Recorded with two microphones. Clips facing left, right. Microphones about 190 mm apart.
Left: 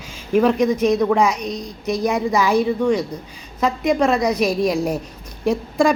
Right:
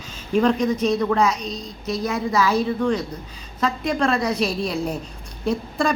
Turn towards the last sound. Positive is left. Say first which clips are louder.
# left 5 dB
turn(degrees=10)  # may be behind; listen again after turning